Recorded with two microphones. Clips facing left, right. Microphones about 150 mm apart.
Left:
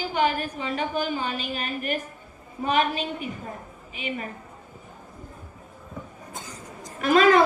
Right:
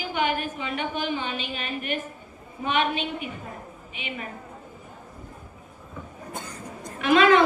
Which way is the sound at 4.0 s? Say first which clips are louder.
Left 4 dB; 40° left (ahead or behind).